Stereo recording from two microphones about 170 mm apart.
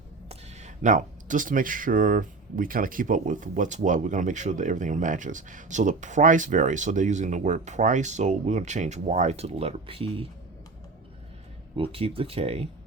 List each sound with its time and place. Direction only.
0.3 s speech: 45° right (ahead or behind)
11.8 s speech: 35° right (ahead or behind)